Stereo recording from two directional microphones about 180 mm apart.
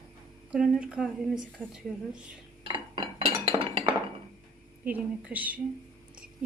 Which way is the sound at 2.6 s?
30° right (ahead or behind).